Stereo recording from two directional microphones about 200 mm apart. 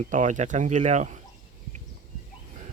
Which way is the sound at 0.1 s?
40° right (ahead or behind).